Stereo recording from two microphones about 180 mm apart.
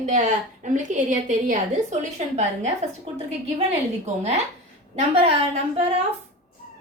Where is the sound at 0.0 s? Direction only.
40° right (ahead or behind).